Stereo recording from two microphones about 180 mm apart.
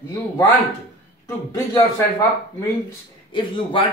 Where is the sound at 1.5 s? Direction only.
15° left (ahead or behind).